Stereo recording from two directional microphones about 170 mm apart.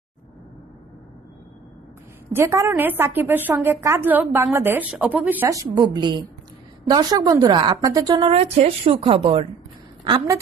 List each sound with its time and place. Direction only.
2.3 s a woman's voice: 20° right (ahead or behind)
5.9 s a woman's voice: 25° right (ahead or behind)
8.1 s a woman's voice: 30° right (ahead or behind)